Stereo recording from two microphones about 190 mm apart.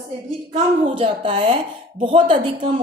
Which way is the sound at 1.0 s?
25° right (ahead or behind).